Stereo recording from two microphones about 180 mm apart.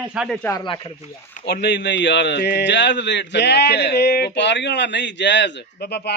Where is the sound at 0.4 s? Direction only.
20° left (ahead or behind).